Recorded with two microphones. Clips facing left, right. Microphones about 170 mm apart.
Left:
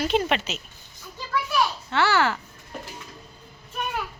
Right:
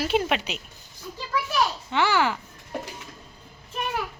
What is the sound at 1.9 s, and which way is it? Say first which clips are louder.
Speech: left 1 dB; 15° right (ahead or behind).